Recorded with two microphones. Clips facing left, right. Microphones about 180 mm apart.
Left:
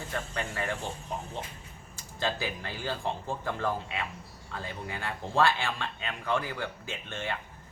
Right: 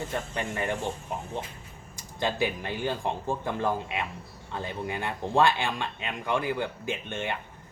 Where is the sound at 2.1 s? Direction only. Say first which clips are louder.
Right 4 dB; 20° right (ahead or behind).